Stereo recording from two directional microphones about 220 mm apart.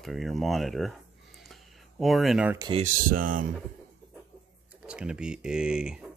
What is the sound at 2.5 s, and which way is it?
Speech, 20° right (ahead or behind).